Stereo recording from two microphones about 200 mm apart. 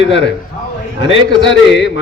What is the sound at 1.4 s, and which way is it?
Speech, 65° left (ahead or behind).